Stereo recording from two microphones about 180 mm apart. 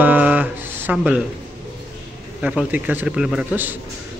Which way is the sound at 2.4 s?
5° right (ahead or behind).